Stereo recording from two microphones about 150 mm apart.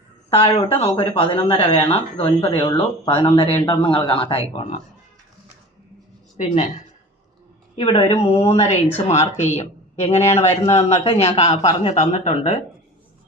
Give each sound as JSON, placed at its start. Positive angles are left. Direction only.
{"t": 0.3, "sound": "speech", "side_deg": 40}
{"t": 6.3, "sound": "a woman's voice", "side_deg": 50}
{"t": 7.8, "sound": "speech", "side_deg": 35}